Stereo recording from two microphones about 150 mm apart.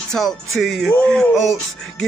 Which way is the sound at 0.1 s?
Centre (ahead or behind).